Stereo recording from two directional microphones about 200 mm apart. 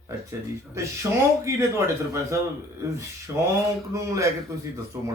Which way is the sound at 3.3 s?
15° right (ahead or behind).